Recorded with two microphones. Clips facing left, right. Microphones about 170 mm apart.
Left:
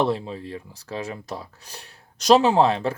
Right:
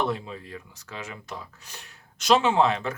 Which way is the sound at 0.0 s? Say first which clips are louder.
Left 5 dB; 30° left (ahead or behind).